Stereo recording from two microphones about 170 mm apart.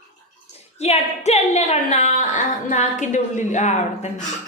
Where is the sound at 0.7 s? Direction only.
40° left (ahead or behind).